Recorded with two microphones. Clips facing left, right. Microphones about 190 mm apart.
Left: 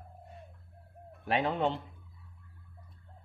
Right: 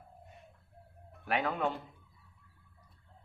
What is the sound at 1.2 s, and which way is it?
Speech, 25° left (ahead or behind).